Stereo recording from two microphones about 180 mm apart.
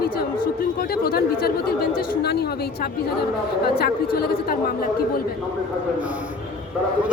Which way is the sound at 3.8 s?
60° left (ahead or behind).